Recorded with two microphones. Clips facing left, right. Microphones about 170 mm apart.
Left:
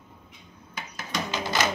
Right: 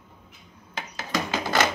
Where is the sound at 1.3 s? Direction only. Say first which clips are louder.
Right 3 dB; 55° right (ahead or behind).